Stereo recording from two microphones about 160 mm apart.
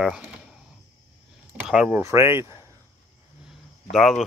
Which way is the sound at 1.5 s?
10° right (ahead or behind).